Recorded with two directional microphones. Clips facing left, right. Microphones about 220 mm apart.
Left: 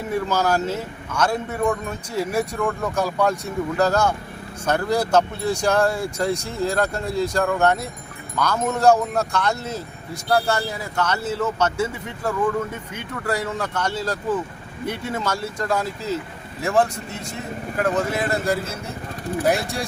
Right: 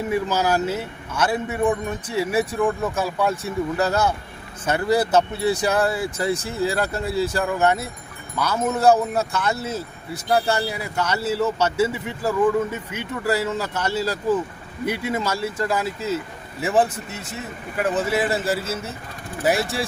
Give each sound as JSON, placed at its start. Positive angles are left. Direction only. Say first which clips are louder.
{"t": 0.1, "sound": "speech", "louder": "left 1 dB", "side_deg": -10}